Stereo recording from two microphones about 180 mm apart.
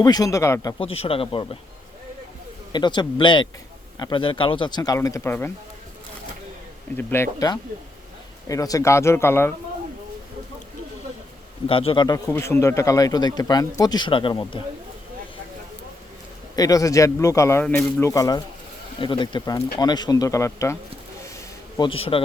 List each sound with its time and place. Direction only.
0.0 s a man's voice: 20° left (ahead or behind)
0.8 s speech: 30° left (ahead or behind)
2.7 s a man's voice: 25° left (ahead or behind)
6.9 s speech: 15° left (ahead or behind)
11.7 s a man's voice: 30° left (ahead or behind)
16.6 s a man's voice: 20° left (ahead or behind)
21.8 s speech: 30° left (ahead or behind)